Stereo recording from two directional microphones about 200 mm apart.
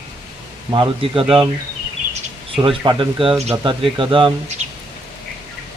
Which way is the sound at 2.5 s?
25° right (ahead or behind).